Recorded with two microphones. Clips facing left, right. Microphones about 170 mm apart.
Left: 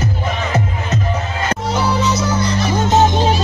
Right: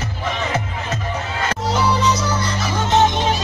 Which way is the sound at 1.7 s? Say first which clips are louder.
Even; centre (ahead or behind).